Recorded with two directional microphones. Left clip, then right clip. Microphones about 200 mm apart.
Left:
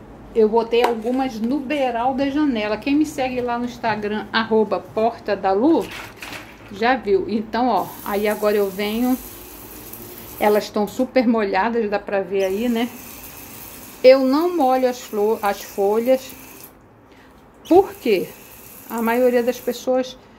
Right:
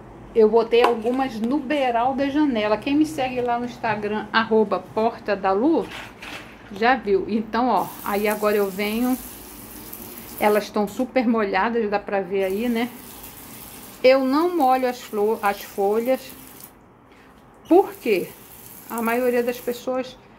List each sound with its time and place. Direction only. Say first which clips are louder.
0.3 s a woman's voice: even; 5° right (ahead or behind)
10.4 s a woman's voice: left 2 dB; centre (ahead or behind)
14.0 s a woman's voice: left 4 dB; centre (ahead or behind)
17.6 s a woman's voice: left 2 dB; 10° left (ahead or behind)